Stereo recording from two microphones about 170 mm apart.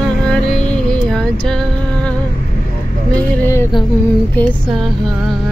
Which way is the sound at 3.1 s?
15° left (ahead or behind).